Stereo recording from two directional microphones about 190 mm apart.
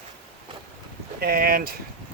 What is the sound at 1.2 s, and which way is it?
Speech, 55° right (ahead or behind).